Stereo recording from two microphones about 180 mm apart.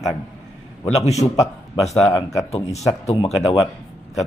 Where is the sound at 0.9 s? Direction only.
35° left (ahead or behind).